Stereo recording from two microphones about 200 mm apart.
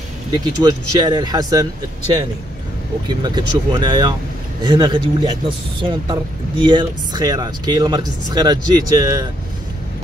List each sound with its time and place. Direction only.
0.3 s speech: 20° right (ahead or behind)
3.1 s speech: 20° right (ahead or behind)